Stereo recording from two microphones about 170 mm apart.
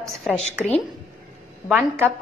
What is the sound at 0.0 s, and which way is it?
Speech, centre (ahead or behind).